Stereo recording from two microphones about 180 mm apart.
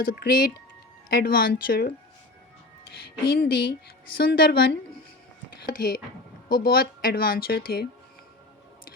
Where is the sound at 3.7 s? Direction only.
60° left (ahead or behind).